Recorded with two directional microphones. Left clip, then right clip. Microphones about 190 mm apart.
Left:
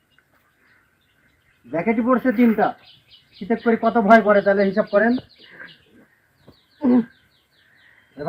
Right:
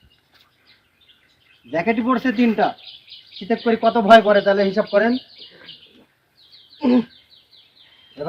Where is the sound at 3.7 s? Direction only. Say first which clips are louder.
Right 2 dB; 45° right (ahead or behind).